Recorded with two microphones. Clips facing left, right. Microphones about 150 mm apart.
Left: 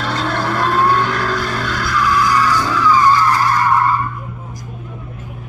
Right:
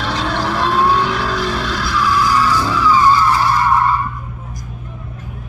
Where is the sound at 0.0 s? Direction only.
Centre (ahead or behind).